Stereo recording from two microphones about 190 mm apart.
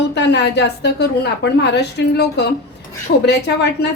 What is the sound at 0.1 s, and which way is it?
A woman's voice, 65° left (ahead or behind).